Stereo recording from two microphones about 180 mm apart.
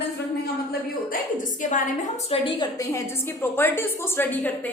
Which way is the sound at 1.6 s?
45° left (ahead or behind).